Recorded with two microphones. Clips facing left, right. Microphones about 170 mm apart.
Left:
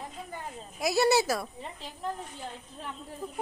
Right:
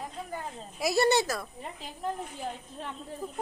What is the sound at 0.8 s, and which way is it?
Speech, centre (ahead or behind).